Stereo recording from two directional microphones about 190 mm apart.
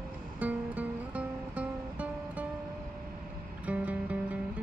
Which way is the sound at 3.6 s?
5° right (ahead or behind).